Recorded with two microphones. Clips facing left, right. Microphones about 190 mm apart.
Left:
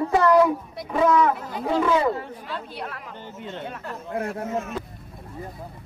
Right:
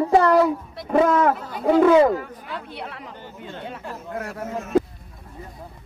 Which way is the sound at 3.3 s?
20° left (ahead or behind).